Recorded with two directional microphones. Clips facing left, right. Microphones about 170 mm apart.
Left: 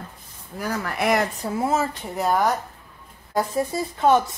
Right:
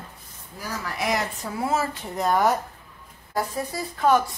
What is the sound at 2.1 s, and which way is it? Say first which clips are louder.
Speech: even; 5° left (ahead or behind).